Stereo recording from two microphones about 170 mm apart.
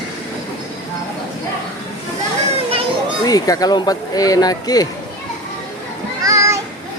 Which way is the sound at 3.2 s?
20° left (ahead or behind).